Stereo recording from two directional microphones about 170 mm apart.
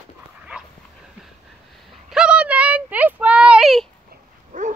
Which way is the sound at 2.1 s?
5° right (ahead or behind).